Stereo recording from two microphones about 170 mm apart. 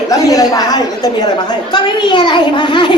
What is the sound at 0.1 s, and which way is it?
A woman's voice, 20° left (ahead or behind).